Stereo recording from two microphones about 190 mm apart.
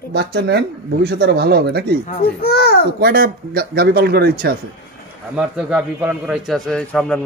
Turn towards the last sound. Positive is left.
turn(degrees=5)  # may be behind; listen again after turning